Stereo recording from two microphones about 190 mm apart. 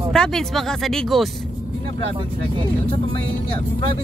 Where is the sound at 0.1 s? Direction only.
5° left (ahead or behind).